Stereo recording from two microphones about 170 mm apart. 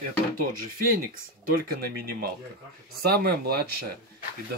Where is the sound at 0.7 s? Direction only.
55° right (ahead or behind).